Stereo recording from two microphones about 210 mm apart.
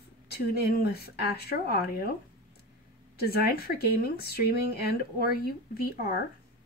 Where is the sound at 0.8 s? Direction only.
45° left (ahead or behind).